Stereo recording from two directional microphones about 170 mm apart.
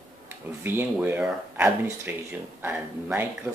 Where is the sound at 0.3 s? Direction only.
10° right (ahead or behind).